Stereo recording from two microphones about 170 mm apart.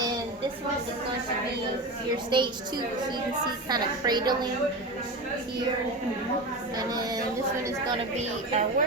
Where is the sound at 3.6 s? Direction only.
25° right (ahead or behind).